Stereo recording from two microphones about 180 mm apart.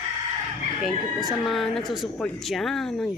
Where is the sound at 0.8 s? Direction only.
Centre (ahead or behind).